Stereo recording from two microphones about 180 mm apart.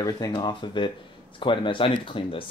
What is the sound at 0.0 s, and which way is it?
Speech, 20° left (ahead or behind).